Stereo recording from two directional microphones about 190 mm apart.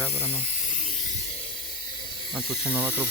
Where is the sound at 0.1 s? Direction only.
30° left (ahead or behind).